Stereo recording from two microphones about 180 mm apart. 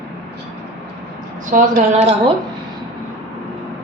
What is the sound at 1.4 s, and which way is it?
Speech, 40° right (ahead or behind).